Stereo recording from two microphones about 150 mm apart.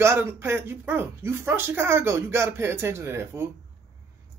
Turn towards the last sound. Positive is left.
turn(degrees=-15)  # may be behind; listen again after turning